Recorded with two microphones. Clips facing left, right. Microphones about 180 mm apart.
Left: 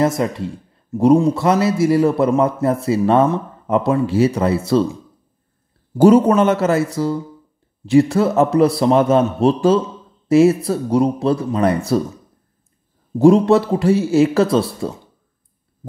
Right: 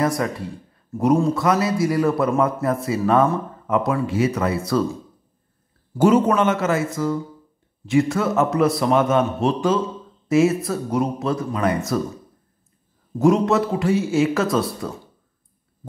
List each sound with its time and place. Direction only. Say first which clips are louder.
0.0 s a man's voice: left 4 dB; 25° left (ahead or behind)
5.9 s a man's voice: left 5 dB; 35° left (ahead or behind)
13.2 s a man's voice: left 5 dB; 30° left (ahead or behind)